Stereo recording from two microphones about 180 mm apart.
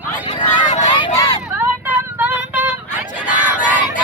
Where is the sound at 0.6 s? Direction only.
40° left (ahead or behind).